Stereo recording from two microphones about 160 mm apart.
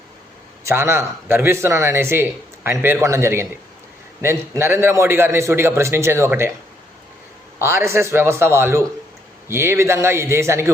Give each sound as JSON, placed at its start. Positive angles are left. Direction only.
{"t": 0.6, "sound": "speech", "side_deg": -15}
{"t": 7.6, "sound": "speech", "side_deg": -15}